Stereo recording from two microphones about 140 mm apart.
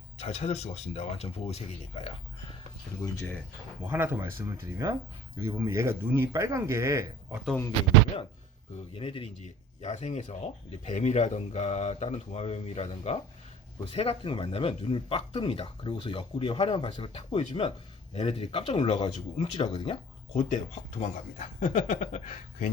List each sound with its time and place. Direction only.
0.2 s speech: 50° left (ahead or behind)
3.8 s speech: 15° right (ahead or behind)
9.0 s speech: 40° left (ahead or behind)
19.0 s speech: 30° left (ahead or behind)
20.4 s speech: 60° left (ahead or behind)